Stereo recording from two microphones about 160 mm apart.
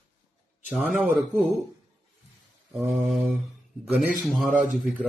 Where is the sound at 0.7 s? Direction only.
Centre (ahead or behind).